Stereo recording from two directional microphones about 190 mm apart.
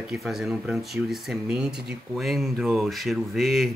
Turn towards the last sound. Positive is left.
turn(degrees=0)  # may be behind; listen again after turning